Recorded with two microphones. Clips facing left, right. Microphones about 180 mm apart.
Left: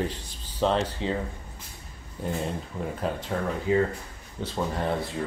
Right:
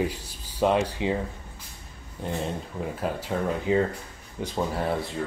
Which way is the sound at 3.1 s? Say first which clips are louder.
Even; 5° right (ahead or behind).